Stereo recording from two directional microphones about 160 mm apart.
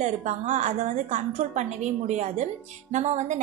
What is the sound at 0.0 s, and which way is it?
A woman's voice, 50° right (ahead or behind).